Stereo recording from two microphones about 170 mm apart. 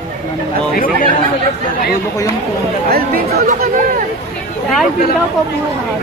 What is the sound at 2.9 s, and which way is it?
Speech, 65° right (ahead or behind).